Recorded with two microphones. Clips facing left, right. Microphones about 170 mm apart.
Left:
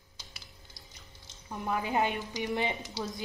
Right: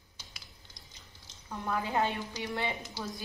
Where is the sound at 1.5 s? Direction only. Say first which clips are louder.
Left 1 dB; 15° left (ahead or behind).